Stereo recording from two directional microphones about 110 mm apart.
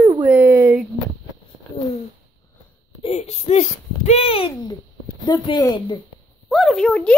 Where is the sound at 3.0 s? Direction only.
80° left; by 4.5 s 60° left (ahead or behind).